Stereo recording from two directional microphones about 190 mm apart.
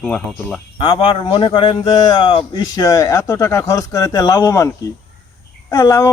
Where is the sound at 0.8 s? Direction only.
25° left (ahead or behind).